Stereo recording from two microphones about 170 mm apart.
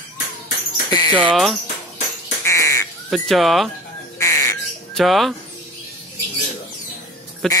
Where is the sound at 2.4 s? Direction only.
20° left (ahead or behind).